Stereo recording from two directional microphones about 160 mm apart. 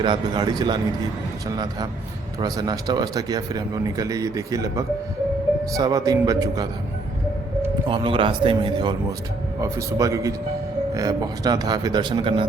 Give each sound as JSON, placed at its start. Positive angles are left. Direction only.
{"t": 0.0, "sound": "speech", "side_deg": -30}
{"t": 7.9, "sound": "speech", "side_deg": -30}